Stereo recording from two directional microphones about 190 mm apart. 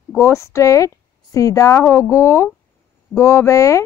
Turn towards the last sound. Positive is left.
turn(degrees=15)  # may be behind; listen again after turning